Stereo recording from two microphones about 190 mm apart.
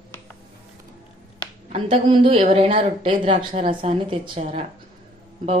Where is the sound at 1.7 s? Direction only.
30° right (ahead or behind).